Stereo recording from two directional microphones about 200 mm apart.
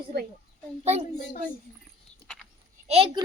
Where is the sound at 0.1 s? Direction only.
55° right (ahead or behind).